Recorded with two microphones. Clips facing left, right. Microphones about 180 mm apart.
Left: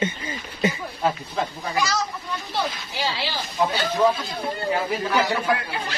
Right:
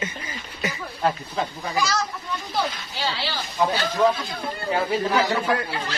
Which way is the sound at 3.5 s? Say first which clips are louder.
Even; 5° left (ahead or behind).